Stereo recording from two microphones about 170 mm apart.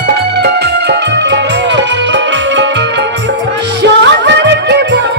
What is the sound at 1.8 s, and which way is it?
Music, 90° right.